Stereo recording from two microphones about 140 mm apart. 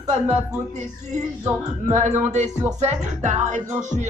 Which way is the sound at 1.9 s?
55° right (ahead or behind).